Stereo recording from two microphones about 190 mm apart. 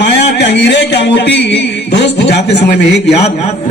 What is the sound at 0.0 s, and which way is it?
Music, 65° left (ahead or behind).